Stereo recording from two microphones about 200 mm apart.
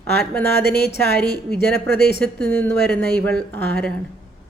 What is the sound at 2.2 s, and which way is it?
A woman's voice, 5° left (ahead or behind).